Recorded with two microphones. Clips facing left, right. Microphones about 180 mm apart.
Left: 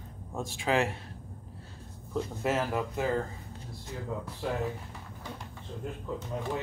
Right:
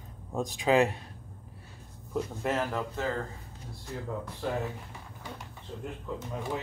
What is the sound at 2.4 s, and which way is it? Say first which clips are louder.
Speech: left 2 dB; 5° left (ahead or behind).